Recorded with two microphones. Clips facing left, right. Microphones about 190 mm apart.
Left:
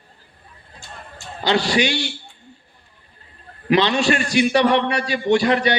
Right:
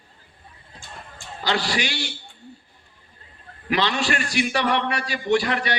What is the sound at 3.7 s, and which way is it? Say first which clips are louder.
A man's voice: left 6 dB; 25° left (ahead or behind).